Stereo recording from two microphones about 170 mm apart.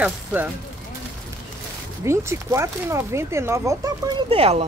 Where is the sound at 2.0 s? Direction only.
15° right (ahead or behind).